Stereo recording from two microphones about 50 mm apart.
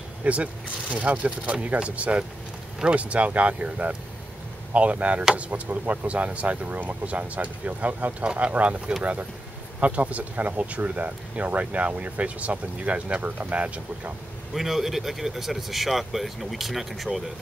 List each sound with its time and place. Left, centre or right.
0.2 s speech: right
14.5 s speech: centre